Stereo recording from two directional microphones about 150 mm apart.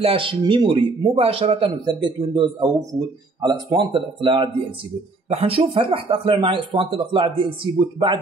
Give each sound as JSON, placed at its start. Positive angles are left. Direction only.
{"t": 0.0, "sound": "speech", "side_deg": -35}